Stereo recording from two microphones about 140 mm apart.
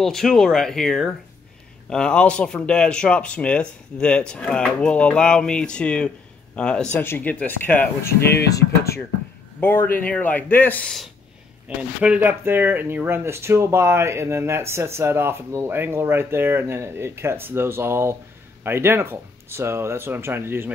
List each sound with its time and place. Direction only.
0.0 s speech: centre (ahead or behind)
11.6 s speech: 10° right (ahead or behind)